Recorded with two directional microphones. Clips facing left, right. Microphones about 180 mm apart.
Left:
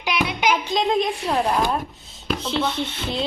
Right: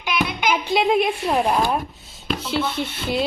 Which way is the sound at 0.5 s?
10° right (ahead or behind).